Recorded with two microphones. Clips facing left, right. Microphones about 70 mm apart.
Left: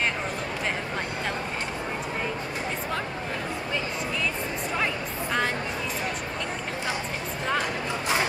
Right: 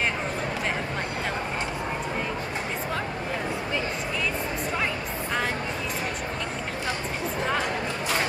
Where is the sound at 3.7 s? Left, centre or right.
Centre.